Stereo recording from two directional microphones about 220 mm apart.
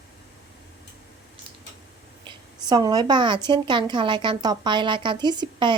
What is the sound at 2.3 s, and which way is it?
A woman's voice, 20° right (ahead or behind).